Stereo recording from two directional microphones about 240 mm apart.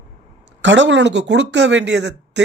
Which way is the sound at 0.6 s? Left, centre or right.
Right.